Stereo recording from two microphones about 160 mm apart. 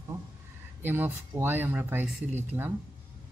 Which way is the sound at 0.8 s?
10° right (ahead or behind).